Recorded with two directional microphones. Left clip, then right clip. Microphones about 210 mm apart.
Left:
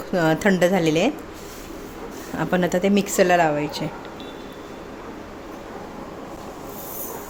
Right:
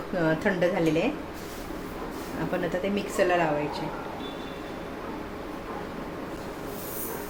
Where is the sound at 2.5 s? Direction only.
60° left (ahead or behind).